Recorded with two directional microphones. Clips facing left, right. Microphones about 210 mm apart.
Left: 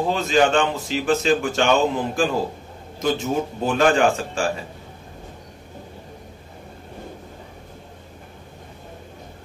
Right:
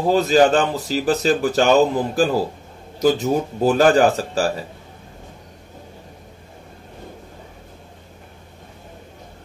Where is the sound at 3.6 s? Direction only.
40° right (ahead or behind).